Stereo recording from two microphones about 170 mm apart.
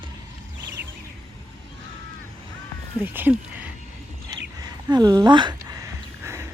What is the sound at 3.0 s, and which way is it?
Speech, 10° right (ahead or behind).